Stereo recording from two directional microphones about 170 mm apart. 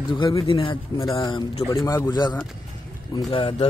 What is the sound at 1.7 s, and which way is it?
A man's voice, 15° left (ahead or behind).